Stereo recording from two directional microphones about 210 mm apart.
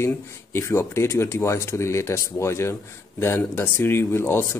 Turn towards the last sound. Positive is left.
turn(degrees=10)  # may be behind; listen again after turning